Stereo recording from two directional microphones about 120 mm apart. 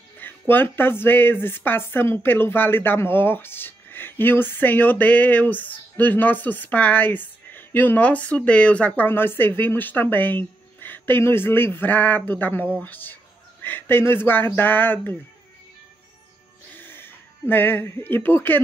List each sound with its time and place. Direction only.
0.2 s speech: 15° left (ahead or behind)
16.7 s speech: 15° left (ahead or behind)